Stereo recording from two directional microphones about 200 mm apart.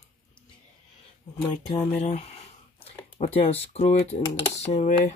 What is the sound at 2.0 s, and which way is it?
Speech, 35° left (ahead or behind).